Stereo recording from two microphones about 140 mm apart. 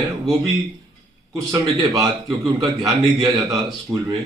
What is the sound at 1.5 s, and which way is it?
Speech, 25° right (ahead or behind).